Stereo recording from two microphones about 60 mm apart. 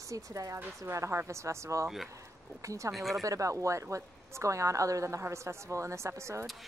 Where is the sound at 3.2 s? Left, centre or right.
Right.